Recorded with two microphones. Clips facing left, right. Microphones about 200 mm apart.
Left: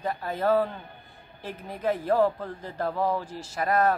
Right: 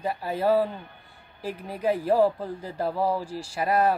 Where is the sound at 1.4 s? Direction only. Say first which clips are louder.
Right 4 dB; 35° right (ahead or behind).